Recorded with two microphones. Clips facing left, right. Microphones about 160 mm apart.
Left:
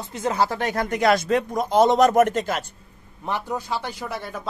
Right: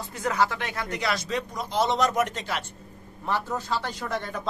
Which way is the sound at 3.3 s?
15° left (ahead or behind).